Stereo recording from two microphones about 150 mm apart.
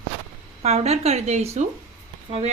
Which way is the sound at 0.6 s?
45° right (ahead or behind).